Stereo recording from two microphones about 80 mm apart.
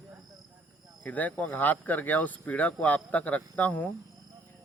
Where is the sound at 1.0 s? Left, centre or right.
Centre.